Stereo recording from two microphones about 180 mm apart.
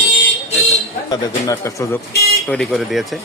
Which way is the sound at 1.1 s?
20° left (ahead or behind).